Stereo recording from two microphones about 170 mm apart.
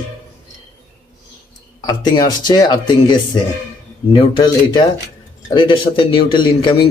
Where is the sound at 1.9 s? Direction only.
25° left (ahead or behind).